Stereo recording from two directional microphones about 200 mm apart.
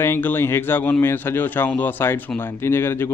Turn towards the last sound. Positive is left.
turn(degrees=10)  # may be behind; listen again after turning